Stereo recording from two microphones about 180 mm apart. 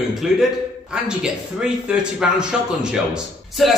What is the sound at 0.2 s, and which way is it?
A man's voice, centre (ahead or behind).